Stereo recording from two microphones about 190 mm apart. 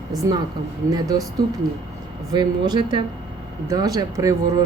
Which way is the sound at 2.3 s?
20° right (ahead or behind).